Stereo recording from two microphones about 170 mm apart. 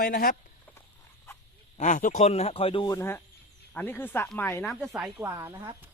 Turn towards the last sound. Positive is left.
turn(degrees=-25)  # may be behind; listen again after turning